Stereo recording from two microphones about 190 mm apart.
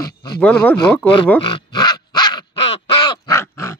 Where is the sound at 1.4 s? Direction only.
25° left (ahead or behind).